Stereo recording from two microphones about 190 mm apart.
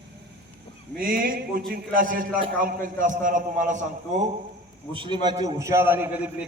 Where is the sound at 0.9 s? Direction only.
50° right (ahead or behind).